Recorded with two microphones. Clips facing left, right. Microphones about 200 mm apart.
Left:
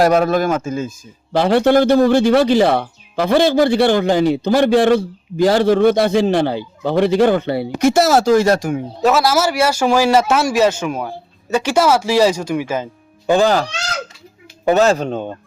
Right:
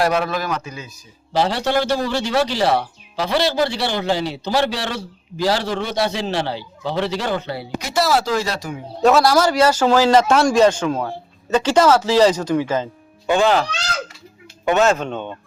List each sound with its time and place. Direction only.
0.0 s a man's voice: 45° left (ahead or behind)
9.0 s a man's voice: centre (ahead or behind)
13.2 s speech: 35° left (ahead or behind)